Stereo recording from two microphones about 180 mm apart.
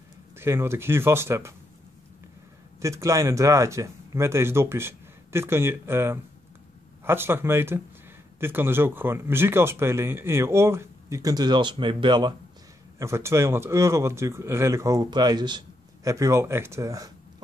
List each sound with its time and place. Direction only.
0.4 s speech: 15° right (ahead or behind)
2.8 s speech: 15° right (ahead or behind)